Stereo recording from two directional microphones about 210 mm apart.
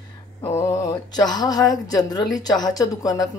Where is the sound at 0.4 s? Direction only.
15° left (ahead or behind).